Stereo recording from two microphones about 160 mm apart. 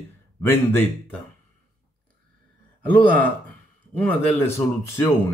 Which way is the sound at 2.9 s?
10° left (ahead or behind).